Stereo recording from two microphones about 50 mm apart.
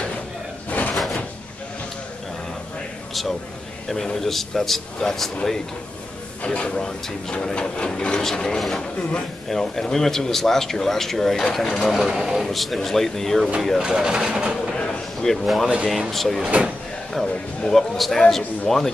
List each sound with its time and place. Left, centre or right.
0.7 s drawer open or close: left
3.9 s speech: centre
6.4 s speech: left; by 13.5 s centre
13.7 s speech: centre
15.4 s speech: centre
16.4 s speech: right
17.1 s speech: centre